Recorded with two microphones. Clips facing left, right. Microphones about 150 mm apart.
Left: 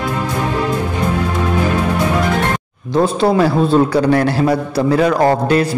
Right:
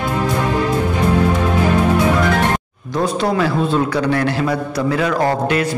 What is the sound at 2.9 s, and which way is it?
A man's voice, 30° left (ahead or behind).